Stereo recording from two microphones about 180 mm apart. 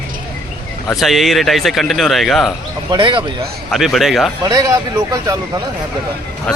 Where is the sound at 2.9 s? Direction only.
25° right (ahead or behind).